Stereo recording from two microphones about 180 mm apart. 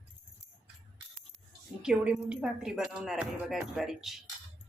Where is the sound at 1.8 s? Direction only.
5° right (ahead or behind).